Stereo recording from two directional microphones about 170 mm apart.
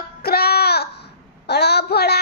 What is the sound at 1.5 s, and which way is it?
Speech, 75° left (ahead or behind).